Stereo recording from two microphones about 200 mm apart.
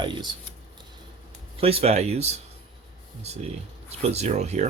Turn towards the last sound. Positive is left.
turn(degrees=-35)  # may be behind; listen again after turning